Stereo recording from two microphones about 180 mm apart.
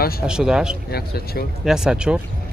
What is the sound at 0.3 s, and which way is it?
Speech, 5° right (ahead or behind).